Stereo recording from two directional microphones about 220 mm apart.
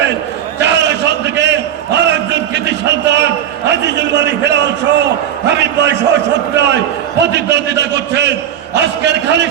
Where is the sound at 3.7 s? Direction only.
50° right (ahead or behind).